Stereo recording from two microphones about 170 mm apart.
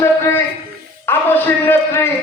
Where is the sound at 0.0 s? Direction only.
15° left (ahead or behind).